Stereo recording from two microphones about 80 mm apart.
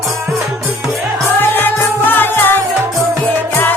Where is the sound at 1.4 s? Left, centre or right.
Left.